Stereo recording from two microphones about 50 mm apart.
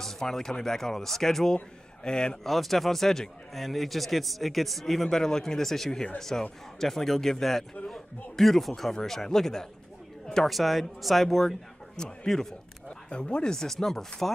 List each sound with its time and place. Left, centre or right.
0.0 s speech: centre
2.4 s a man's voice: centre
10.5 s a man's voice: centre
12.8 s speech: centre